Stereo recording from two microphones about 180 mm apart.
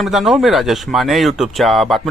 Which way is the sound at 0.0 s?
Centre (ahead or behind).